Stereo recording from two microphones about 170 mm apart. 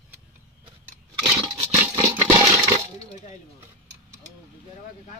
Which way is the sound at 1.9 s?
15° right (ahead or behind).